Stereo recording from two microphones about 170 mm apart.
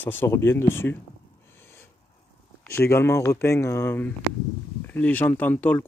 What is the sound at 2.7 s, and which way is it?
Speech, 15° left (ahead or behind).